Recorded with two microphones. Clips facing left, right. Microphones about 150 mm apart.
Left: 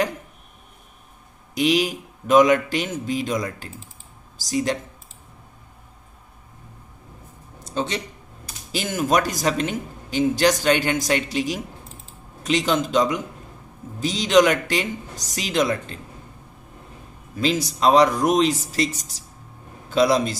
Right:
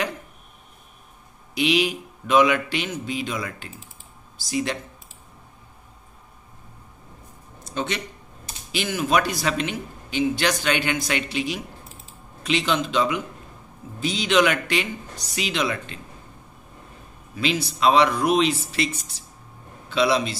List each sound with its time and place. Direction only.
1.5 s a man's voice: 40° left (ahead or behind)
7.6 s speech: 35° left (ahead or behind)
8.7 s a man's voice: 45° left (ahead or behind)
17.4 s a man's voice: 40° left (ahead or behind)